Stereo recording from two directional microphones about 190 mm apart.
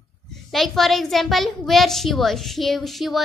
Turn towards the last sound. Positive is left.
turn(degrees=0)  # may be behind; listen again after turning